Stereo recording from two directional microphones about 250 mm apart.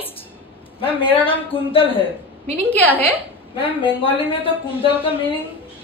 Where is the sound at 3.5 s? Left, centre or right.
Left.